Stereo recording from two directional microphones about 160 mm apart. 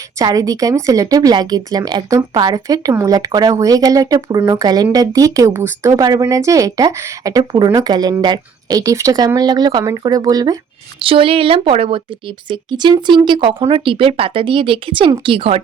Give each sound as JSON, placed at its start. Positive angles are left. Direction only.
{"t": 0.2, "sound": "speech", "side_deg": -20}
{"t": 11.0, "sound": "speech", "side_deg": -35}